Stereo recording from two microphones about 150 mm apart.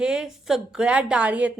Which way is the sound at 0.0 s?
5° right (ahead or behind).